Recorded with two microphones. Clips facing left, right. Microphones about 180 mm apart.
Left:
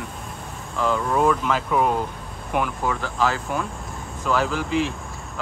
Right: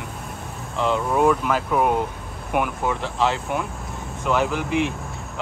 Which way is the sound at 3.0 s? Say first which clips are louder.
Right 1 dB; 25° right (ahead or behind).